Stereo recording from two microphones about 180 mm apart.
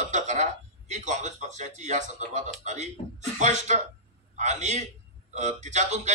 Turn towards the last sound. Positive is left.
turn(degrees=-40)  # may be behind; listen again after turning